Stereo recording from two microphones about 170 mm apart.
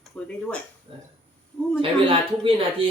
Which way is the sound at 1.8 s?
30° right (ahead or behind).